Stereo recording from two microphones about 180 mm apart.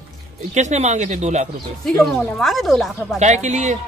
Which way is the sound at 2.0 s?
Centre (ahead or behind).